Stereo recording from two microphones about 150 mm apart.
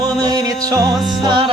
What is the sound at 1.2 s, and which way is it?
Music, 30° right (ahead or behind).